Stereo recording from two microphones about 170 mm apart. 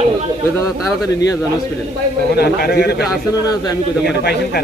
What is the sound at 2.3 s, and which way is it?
A man's voice, 70° left (ahead or behind).